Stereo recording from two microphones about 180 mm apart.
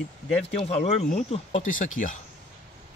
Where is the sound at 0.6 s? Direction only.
35° left (ahead or behind).